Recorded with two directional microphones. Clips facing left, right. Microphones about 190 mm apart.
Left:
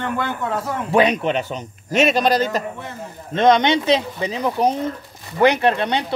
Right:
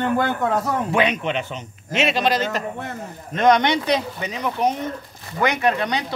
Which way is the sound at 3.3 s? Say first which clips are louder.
Left 2 dB; 25° left (ahead or behind).